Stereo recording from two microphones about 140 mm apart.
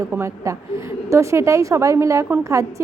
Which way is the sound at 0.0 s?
20° right (ahead or behind).